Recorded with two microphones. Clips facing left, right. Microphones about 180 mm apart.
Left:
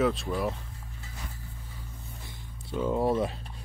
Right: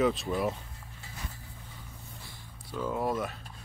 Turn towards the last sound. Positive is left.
turn(degrees=30)  # may be behind; listen again after turning